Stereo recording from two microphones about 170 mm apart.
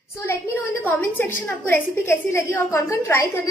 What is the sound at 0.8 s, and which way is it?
A woman's voice, 10° left (ahead or behind).